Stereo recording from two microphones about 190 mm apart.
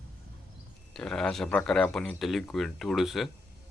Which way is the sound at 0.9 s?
5° left (ahead or behind).